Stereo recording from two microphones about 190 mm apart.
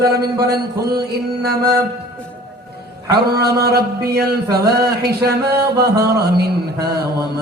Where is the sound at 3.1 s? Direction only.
55° right (ahead or behind).